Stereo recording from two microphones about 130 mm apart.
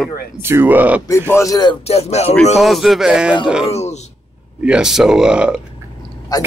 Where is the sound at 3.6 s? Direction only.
55° left (ahead or behind).